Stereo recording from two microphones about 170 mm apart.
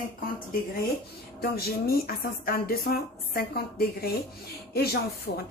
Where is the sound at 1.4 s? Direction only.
65° left (ahead or behind).